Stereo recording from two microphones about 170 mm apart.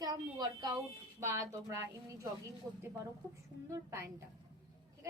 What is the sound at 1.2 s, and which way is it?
A woman's voice, 15° right (ahead or behind).